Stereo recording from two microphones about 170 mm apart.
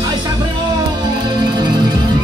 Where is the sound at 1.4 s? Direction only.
25° right (ahead or behind).